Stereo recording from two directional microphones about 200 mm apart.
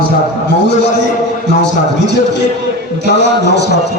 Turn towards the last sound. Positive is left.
turn(degrees=55)  # may be behind; listen again after turning